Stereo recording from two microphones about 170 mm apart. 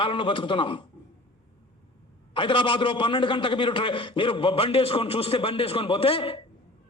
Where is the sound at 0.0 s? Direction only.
30° left (ahead or behind).